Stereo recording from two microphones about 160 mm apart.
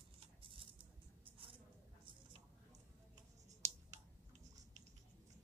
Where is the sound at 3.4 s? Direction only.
45° right (ahead or behind).